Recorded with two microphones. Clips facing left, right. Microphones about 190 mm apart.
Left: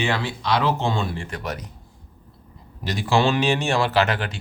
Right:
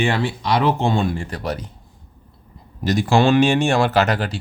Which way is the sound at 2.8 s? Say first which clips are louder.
Right 5 dB; 45° right (ahead or behind).